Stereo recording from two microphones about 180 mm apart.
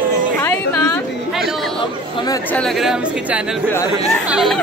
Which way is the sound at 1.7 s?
25° left (ahead or behind).